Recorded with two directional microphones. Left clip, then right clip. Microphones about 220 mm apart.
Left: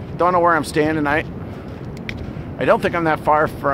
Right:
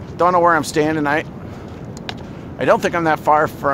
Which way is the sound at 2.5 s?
20° right (ahead or behind).